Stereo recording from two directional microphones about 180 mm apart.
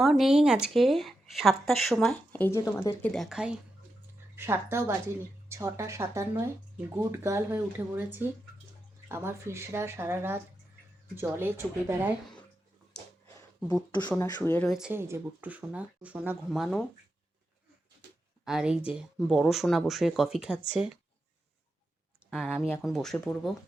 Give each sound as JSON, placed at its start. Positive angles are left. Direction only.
{"t": 0.0, "sound": "a woman's voice", "side_deg": 0}
{"t": 13.7, "sound": "speech", "side_deg": 15}
{"t": 14.7, "sound": "speech", "side_deg": -5}
{"t": 16.5, "sound": "a woman's voice", "side_deg": 0}
{"t": 18.4, "sound": "a woman's voice", "side_deg": -5}
{"t": 22.3, "sound": "a woman's voice", "side_deg": 0}